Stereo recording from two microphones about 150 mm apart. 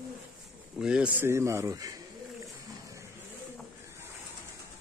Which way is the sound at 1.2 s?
20° right (ahead or behind).